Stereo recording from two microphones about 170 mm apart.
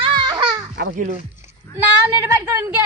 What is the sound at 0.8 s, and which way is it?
Speech, 65° right (ahead or behind).